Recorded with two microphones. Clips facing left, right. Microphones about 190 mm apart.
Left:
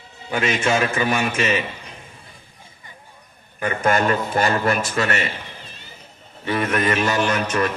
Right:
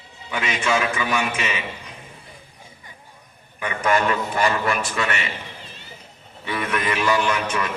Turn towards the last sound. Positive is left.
turn(degrees=45)  # may be behind; listen again after turning